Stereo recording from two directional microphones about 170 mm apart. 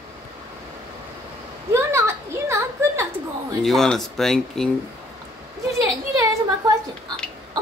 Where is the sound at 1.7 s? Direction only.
15° right (ahead or behind).